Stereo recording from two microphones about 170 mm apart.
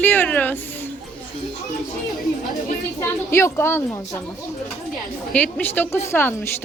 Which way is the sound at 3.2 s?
15° left (ahead or behind).